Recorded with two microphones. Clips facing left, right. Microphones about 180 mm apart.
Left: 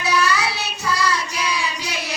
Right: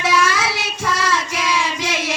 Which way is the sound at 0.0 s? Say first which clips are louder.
Right 2 dB; 85° right.